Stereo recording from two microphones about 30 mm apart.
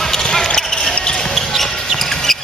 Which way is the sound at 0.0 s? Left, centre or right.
Centre.